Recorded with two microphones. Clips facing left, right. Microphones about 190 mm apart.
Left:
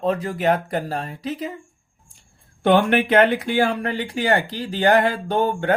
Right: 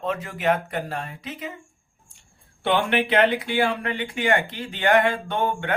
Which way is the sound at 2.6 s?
45° left (ahead or behind).